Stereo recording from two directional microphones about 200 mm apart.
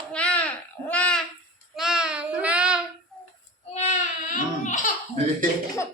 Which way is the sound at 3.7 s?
35° left (ahead or behind).